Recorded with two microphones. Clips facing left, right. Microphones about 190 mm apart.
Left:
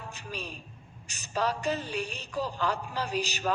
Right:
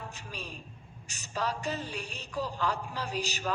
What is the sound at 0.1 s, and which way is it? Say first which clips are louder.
A man's voice: left 3 dB; 70° left (ahead or behind).